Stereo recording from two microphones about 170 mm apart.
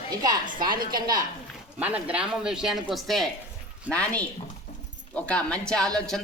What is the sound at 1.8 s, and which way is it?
Speech, 10° right (ahead or behind).